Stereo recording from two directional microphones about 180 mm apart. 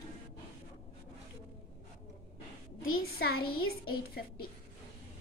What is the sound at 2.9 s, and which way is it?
A child's voice, 60° left (ahead or behind).